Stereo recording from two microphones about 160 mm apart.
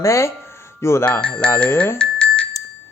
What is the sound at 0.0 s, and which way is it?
Speech, 20° left (ahead or behind).